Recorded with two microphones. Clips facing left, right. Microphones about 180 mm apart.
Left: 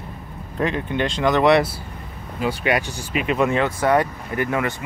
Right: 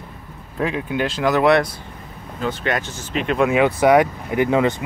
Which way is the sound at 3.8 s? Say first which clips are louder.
Right 4 dB; 15° right (ahead or behind).